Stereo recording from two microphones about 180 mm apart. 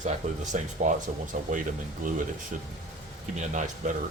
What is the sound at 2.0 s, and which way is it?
Speech, 45° right (ahead or behind).